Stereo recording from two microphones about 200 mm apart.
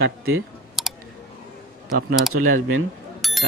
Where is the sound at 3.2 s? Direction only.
Centre (ahead or behind).